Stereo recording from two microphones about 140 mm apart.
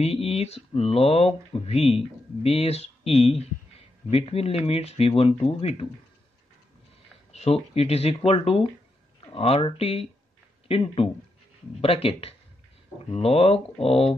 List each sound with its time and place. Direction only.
0.0 s speech: 45° left (ahead or behind)
7.3 s speech: 50° left (ahead or behind)